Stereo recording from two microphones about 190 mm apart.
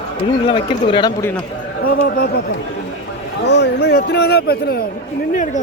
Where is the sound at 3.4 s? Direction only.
65° left (ahead or behind).